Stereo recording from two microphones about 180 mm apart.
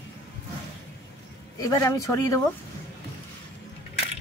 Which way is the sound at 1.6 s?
20° left (ahead or behind).